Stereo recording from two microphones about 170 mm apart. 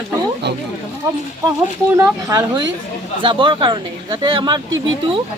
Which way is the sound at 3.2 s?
30° right (ahead or behind).